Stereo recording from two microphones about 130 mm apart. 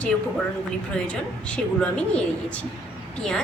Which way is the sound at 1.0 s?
10° left (ahead or behind).